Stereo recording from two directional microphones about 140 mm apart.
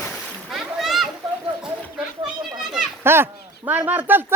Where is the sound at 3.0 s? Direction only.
15° right (ahead or behind).